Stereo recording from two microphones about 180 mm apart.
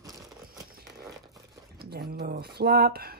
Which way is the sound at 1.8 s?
60° right (ahead or behind).